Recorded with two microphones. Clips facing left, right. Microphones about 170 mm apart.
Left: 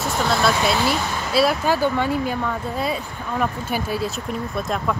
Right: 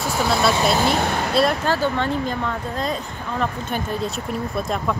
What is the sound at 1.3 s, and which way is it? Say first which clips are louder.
Speech: left 2 dB; 5° left (ahead or behind).